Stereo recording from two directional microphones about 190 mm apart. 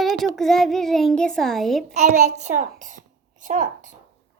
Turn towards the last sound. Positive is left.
turn(degrees=-40)  # may be behind; listen again after turning